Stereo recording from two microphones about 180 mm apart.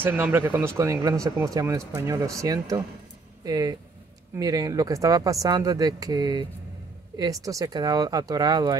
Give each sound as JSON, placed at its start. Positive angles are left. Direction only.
{"t": 0.0, "sound": "speech", "side_deg": -10}